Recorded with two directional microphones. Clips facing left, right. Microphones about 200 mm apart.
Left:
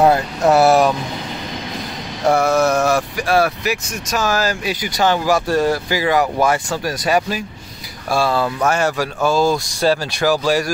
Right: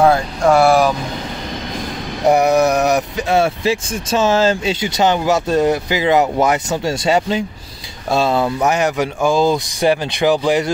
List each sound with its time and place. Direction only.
0.0 s speech: 5° left (ahead or behind)
2.2 s speech: 15° right (ahead or behind)